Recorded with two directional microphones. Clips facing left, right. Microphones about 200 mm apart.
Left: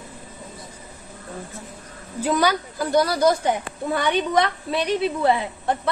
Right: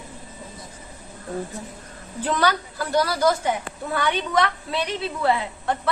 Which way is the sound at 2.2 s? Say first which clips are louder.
Left 2 dB; 10° left (ahead or behind).